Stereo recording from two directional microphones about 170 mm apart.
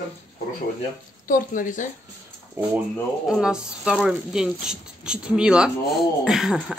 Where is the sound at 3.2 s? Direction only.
5° right (ahead or behind).